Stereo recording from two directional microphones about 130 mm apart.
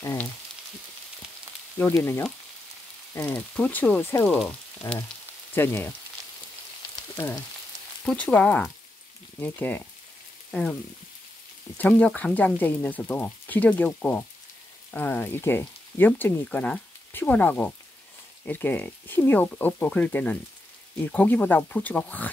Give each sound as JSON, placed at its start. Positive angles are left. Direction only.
{"t": 0.0, "sound": "frying", "side_deg": 20}
{"t": 1.8, "sound": "speech", "side_deg": 15}
{"t": 3.3, "sound": "speech", "side_deg": 10}
{"t": 4.8, "sound": "frying", "side_deg": 20}
{"t": 5.5, "sound": "speech", "side_deg": 20}
{"t": 8.0, "sound": "speech", "side_deg": 10}
{"t": 10.5, "sound": "frying", "side_deg": 10}
{"t": 11.8, "sound": "speech", "side_deg": 10}